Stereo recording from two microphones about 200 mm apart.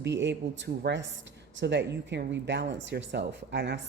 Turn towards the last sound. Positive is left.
turn(degrees=-60)  # may be behind; listen again after turning